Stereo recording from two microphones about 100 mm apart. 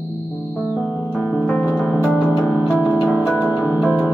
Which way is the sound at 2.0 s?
5° right (ahead or behind).